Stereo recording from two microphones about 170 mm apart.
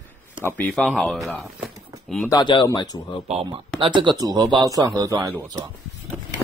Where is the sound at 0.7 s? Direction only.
Centre (ahead or behind).